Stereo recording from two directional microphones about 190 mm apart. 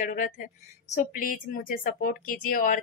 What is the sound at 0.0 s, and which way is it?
Speech, 45° left (ahead or behind).